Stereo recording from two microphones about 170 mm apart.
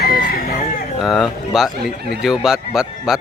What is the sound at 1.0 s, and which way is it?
Speech, centre (ahead or behind).